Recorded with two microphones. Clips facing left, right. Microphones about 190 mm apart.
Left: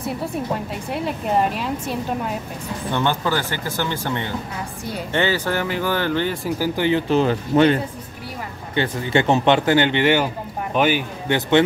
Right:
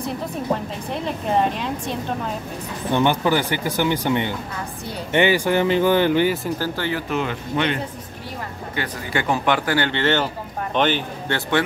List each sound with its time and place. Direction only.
0.9 s speech: 5° left (ahead or behind)
2.9 s speech: 15° right (ahead or behind)
6.6 s speech: 15° left (ahead or behind); by 7.8 s 40° left (ahead or behind)
8.7 s speech: 25° left (ahead or behind)